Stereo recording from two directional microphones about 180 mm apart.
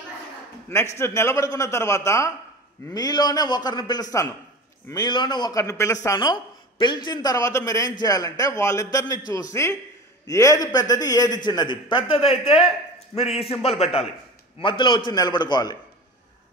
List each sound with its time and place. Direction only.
0.9 s a man's voice: 15° left (ahead or behind)